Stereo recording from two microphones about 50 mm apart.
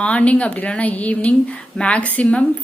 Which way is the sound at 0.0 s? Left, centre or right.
Left.